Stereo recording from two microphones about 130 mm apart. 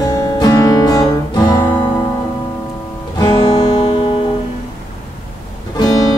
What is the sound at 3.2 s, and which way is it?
Music, 35° left (ahead or behind).